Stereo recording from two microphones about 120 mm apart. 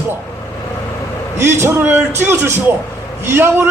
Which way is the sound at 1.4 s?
20° right (ahead or behind).